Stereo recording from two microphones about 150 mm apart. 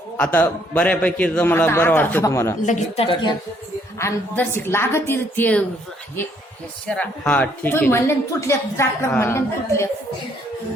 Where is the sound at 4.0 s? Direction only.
15° left (ahead or behind).